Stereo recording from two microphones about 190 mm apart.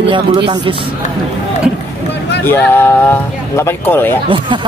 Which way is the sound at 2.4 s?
10° left (ahead or behind).